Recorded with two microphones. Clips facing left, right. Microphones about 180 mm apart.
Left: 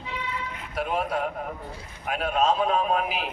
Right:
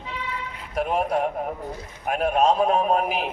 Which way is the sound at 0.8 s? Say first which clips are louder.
Right 4 dB; 45° right (ahead or behind).